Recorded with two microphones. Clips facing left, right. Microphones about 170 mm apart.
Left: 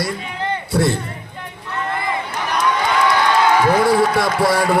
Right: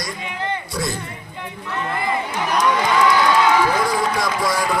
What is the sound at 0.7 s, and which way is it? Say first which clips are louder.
Speech: left 8 dB; 60° left (ahead or behind).